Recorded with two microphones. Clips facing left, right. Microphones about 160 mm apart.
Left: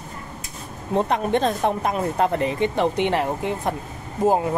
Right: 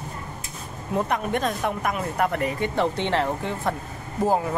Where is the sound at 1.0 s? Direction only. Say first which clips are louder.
Left 4 dB; 25° left (ahead or behind).